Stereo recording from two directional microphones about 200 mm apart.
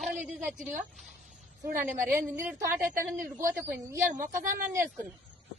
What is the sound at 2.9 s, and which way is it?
A woman's voice, 45° right (ahead or behind).